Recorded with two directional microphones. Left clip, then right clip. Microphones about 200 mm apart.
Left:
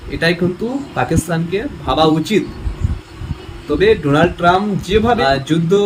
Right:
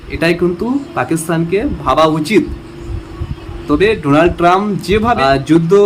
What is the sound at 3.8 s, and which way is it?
Speech, 15° right (ahead or behind).